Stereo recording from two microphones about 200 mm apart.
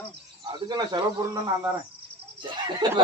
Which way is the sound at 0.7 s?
20° right (ahead or behind).